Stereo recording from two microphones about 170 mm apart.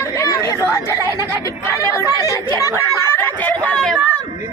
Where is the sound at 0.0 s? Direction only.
20° left (ahead or behind).